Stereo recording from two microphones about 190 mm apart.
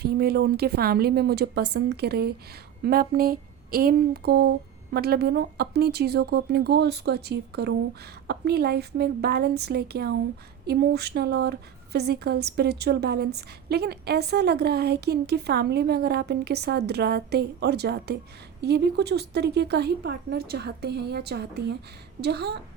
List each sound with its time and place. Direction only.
0.0 s speech: 55° right (ahead or behind)